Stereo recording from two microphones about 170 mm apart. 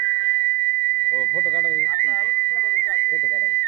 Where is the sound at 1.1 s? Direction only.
55° right (ahead or behind).